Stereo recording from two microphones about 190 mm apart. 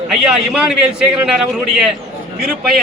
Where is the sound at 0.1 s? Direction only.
5° right (ahead or behind).